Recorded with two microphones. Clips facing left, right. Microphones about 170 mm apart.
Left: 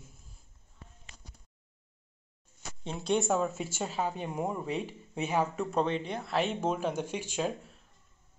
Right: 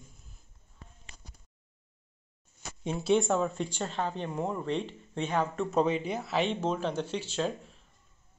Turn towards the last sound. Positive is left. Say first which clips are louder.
# right 1 dB
turn(degrees=10)  # may be behind; listen again after turning